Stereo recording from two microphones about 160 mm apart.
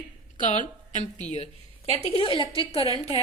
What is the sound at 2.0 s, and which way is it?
Speech, 35° left (ahead or behind).